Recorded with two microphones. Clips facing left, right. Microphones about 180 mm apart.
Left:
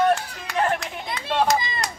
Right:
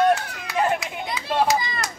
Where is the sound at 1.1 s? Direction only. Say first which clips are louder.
Even; centre (ahead or behind).